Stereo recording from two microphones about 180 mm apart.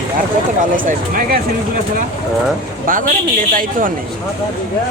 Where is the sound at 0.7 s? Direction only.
50° right (ahead or behind).